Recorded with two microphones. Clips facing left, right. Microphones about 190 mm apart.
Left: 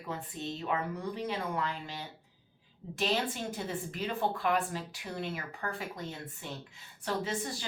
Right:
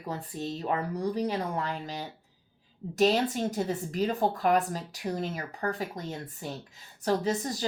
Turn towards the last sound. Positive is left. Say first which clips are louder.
# right 6 dB
turn(degrees=-40)  # may be behind; listen again after turning